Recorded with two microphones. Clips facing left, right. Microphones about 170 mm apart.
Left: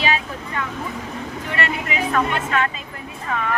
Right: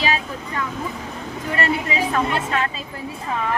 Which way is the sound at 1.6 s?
30° right (ahead or behind).